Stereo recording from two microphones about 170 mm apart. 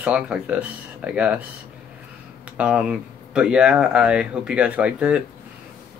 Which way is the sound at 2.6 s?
5° right (ahead or behind).